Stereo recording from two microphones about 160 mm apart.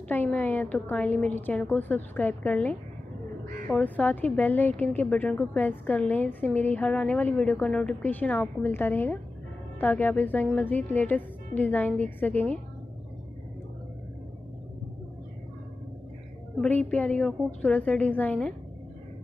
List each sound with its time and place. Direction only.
0.1 s a woman's voice: 10° left (ahead or behind)
16.6 s a woman's voice: 10° left (ahead or behind)